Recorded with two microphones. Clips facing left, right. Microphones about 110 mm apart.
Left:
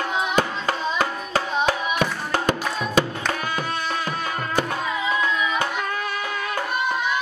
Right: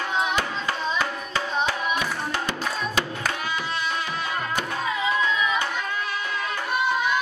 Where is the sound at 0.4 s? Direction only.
45° left (ahead or behind).